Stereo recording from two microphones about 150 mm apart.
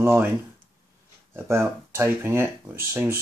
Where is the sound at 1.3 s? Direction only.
15° right (ahead or behind).